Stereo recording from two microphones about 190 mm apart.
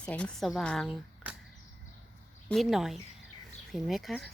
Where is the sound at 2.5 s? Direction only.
Centre (ahead or behind).